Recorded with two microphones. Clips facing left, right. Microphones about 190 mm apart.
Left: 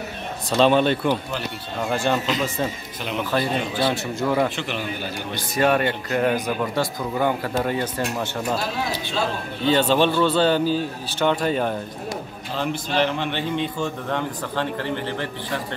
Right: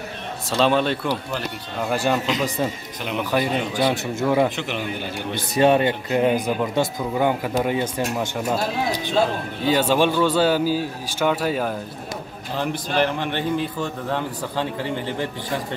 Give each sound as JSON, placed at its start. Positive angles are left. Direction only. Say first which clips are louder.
{"t": 0.5, "sound": "a man's voice", "louder": "left 2 dB", "side_deg": 0}